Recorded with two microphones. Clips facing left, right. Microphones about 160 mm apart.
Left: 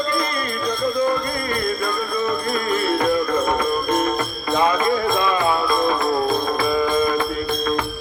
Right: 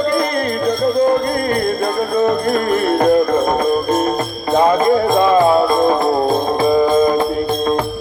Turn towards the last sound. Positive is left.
turn(degrees=-35)  # may be behind; listen again after turning